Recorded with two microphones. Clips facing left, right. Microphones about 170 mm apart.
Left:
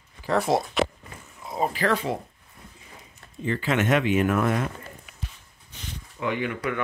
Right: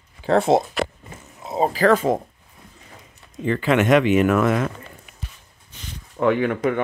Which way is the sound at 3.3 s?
70° right (ahead or behind).